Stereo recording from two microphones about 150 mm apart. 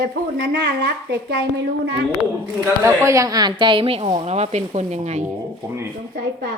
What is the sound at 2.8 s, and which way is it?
A woman's voice, 20° right (ahead or behind).